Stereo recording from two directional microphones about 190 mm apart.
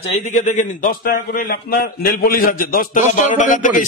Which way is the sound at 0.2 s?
40° left (ahead or behind).